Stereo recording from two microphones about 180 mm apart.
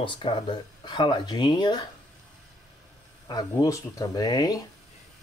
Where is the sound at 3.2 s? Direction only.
20° left (ahead or behind).